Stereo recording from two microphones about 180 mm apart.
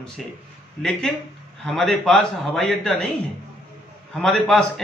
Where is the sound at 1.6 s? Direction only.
5° left (ahead or behind).